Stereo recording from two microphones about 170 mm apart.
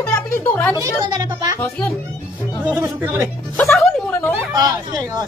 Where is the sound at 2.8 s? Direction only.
15° right (ahead or behind).